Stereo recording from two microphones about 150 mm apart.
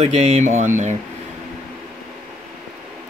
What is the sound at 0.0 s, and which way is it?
Speech, 45° right (ahead or behind).